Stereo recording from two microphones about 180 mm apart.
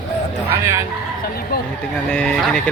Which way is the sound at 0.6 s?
15° right (ahead or behind).